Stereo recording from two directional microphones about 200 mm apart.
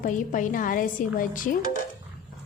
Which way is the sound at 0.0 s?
40° left (ahead or behind).